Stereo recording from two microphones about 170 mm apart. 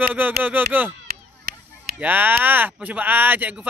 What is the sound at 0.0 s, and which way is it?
Speech, 10° right (ahead or behind).